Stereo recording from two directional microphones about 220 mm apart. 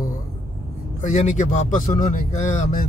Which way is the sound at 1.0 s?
35° left (ahead or behind).